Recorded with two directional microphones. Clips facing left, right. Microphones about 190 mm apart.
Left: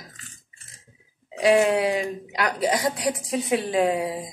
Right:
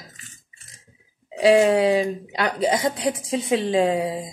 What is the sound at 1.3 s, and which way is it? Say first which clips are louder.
Speech: right 3 dB; 30° right (ahead or behind).